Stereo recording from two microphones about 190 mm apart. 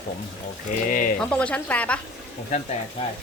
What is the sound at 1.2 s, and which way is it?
Speech, 5° left (ahead or behind).